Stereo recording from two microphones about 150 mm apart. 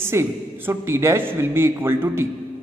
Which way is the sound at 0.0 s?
15° right (ahead or behind).